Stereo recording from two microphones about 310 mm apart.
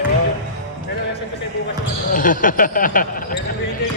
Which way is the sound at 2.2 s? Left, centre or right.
Left.